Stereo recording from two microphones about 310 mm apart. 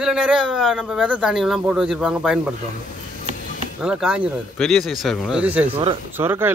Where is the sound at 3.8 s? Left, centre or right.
Centre.